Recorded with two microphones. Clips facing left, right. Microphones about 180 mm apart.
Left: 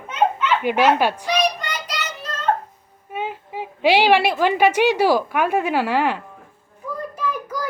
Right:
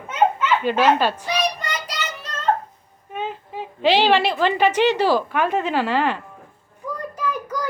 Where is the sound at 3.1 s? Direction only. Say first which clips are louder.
Left 1 dB; 10° left (ahead or behind).